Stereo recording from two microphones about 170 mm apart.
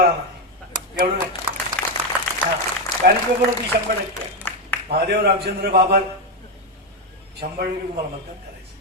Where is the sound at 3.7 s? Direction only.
65° right (ahead or behind).